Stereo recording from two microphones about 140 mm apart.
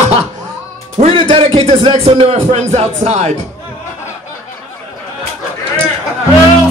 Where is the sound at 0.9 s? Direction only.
45° right (ahead or behind).